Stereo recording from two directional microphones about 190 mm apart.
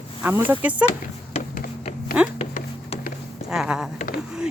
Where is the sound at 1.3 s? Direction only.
45° left (ahead or behind).